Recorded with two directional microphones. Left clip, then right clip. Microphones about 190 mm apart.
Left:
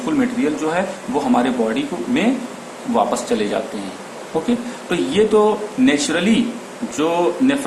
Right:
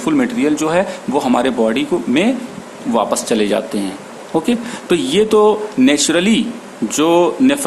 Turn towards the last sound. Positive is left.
turn(degrees=-60)  # may be behind; listen again after turning